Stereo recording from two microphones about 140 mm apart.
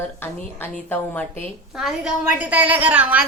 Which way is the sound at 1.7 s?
5° right (ahead or behind).